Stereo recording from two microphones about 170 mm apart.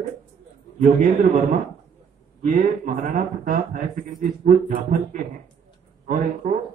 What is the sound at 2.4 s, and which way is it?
Speech, 50° right (ahead or behind).